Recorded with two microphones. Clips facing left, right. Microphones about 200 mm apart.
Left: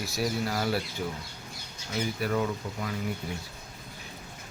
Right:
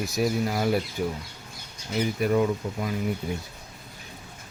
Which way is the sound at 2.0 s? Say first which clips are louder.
Right 6 dB; 20° right (ahead or behind).